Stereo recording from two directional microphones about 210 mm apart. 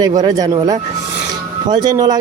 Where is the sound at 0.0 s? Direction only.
15° right (ahead or behind).